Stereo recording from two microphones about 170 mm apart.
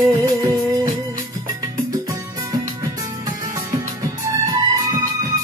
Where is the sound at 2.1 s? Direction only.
20° right (ahead or behind).